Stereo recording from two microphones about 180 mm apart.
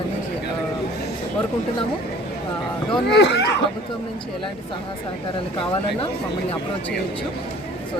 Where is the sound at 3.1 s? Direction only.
75° left (ahead or behind).